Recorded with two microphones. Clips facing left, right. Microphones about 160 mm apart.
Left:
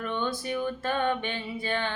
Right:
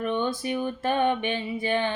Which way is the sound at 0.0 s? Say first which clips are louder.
Right 5 dB; 15° right (ahead or behind).